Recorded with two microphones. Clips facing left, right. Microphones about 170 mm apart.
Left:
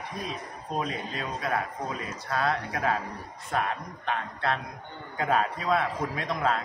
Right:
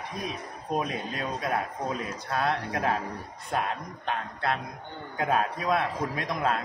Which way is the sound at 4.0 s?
15° right (ahead or behind).